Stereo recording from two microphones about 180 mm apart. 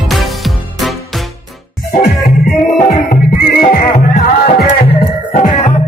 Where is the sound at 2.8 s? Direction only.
55° left (ahead or behind).